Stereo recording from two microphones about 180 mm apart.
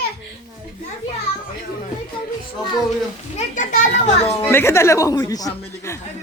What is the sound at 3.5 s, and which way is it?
Speech, 45° left (ahead or behind).